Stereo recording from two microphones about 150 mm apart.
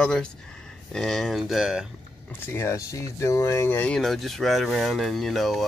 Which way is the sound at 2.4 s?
15° left (ahead or behind).